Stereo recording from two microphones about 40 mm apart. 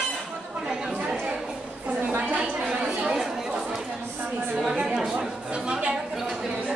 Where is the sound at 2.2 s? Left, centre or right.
Right.